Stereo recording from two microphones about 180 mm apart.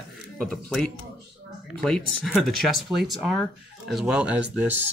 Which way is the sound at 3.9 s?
5° right (ahead or behind).